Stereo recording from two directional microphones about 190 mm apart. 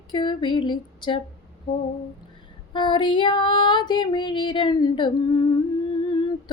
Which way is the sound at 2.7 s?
25° left (ahead or behind).